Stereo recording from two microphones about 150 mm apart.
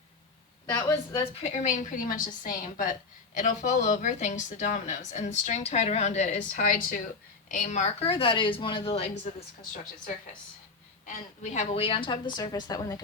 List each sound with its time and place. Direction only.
0.8 s a woman's voice: 20° left (ahead or behind)
1.2 s a woman's voice: 45° left (ahead or behind)
11.5 s a woman's voice: 45° left (ahead or behind); by 13.0 s 25° left (ahead or behind)